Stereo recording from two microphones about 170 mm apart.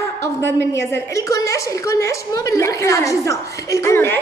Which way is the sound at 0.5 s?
15° left (ahead or behind).